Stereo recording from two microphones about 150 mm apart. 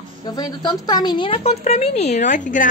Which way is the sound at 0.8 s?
25° left (ahead or behind).